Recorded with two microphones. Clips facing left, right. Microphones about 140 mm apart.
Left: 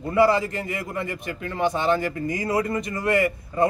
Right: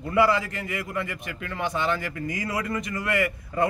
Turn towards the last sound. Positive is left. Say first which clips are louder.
# left 4 dB
turn(degrees=30)  # may be behind; listen again after turning